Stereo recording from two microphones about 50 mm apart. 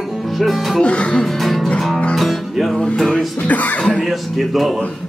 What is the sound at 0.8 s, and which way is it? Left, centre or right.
Speech, left.